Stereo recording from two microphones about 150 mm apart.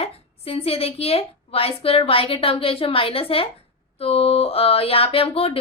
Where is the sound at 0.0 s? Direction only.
40° left (ahead or behind).